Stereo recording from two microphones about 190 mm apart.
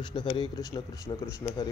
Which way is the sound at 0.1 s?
25° left (ahead or behind).